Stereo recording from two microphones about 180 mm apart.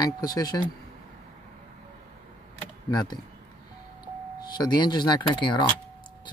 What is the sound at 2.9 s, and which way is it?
Speech, 25° left (ahead or behind).